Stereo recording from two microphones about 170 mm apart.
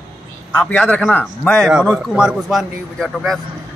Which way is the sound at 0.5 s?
5° left (ahead or behind).